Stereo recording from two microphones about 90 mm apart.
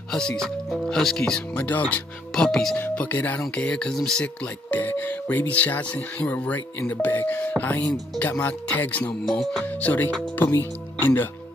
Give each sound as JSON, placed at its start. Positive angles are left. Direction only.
{"t": 0.1, "sound": "speech", "side_deg": 5}
{"t": 2.8, "sound": "speech", "side_deg": 15}
{"t": 9.4, "sound": "speech", "side_deg": 5}
{"t": 9.7, "sound": "speech", "side_deg": 15}